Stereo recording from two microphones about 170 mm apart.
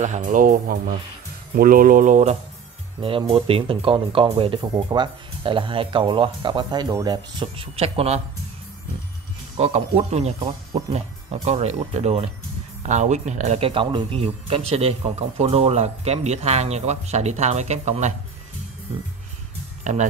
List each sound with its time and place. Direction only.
0.0 s speech: 45° right (ahead or behind)
3.0 s speech: 30° right (ahead or behind)
9.6 s speech: 40° right (ahead or behind)
11.4 s speech: 40° right (ahead or behind)
19.8 s speech: 45° right (ahead or behind)